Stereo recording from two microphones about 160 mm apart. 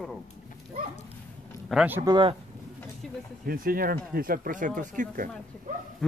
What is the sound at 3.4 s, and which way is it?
Speech, 65° right (ahead or behind).